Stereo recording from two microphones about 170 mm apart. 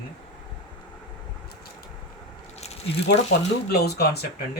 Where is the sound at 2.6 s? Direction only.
35° left (ahead or behind).